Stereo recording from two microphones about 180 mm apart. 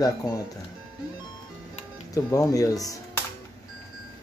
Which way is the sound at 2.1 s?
20° left (ahead or behind).